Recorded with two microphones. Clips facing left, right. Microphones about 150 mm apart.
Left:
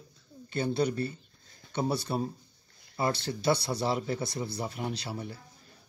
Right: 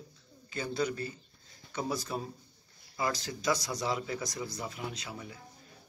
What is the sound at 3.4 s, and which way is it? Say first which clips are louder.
A man's voice: left 4 dB; 30° left (ahead or behind).